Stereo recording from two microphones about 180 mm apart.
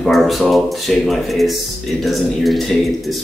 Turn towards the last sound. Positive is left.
turn(degrees=0)  # may be behind; listen again after turning